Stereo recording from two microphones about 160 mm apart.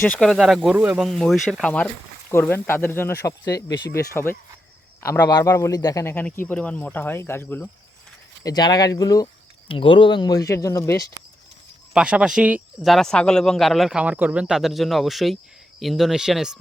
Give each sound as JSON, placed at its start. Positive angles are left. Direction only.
{"t": 0.0, "sound": "a man's voice", "side_deg": 5}
{"t": 1.0, "sound": "a man's voice", "side_deg": 0}
{"t": 8.4, "sound": "speech", "side_deg": 25}
{"t": 11.9, "sound": "speech", "side_deg": -5}
{"t": 12.9, "sound": "a man's voice", "side_deg": 5}